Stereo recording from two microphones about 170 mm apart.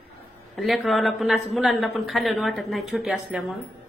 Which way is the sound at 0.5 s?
Centre (ahead or behind).